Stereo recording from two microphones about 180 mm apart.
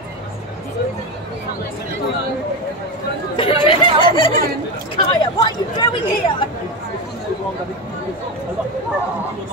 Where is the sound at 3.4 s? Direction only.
30° left (ahead or behind).